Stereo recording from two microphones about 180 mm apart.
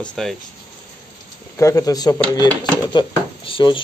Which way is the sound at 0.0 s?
5° left (ahead or behind).